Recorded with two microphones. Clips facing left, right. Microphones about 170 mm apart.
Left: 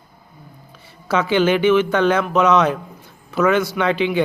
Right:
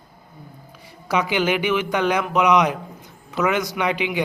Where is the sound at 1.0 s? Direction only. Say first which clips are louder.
Left 4 dB; 15° right (ahead or behind).